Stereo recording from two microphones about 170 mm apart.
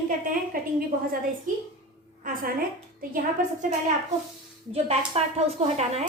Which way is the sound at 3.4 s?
55° right (ahead or behind).